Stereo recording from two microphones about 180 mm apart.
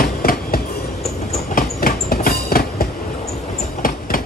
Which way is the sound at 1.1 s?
45° left (ahead or behind).